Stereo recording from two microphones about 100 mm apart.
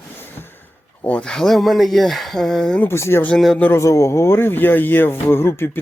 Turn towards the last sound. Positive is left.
turn(degrees=25)  # may be behind; listen again after turning